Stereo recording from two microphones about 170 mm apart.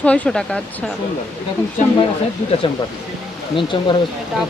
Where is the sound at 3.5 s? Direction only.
30° left (ahead or behind).